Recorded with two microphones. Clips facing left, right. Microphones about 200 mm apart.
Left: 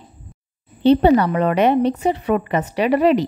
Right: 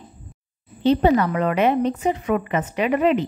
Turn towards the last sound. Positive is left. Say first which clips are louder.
# left 3 dB
turn(degrees=35)  # may be behind; listen again after turning